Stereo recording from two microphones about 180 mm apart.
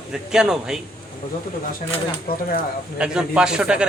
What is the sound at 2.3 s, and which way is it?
Speech, 55° left (ahead or behind).